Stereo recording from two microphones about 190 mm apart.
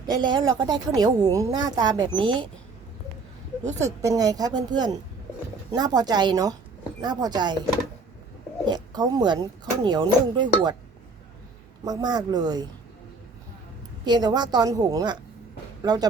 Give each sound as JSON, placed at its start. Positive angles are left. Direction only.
{"t": 0.1, "sound": "speech", "side_deg": -20}
{"t": 3.8, "sound": "speech", "side_deg": -15}
{"t": 8.6, "sound": "speech", "side_deg": -20}
{"t": 11.9, "sound": "speech", "side_deg": -20}
{"t": 14.0, "sound": "speech", "side_deg": -20}